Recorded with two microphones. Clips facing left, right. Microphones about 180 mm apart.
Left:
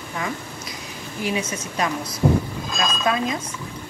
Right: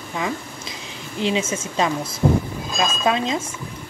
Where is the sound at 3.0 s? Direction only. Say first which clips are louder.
Right 2 dB; 25° right (ahead or behind).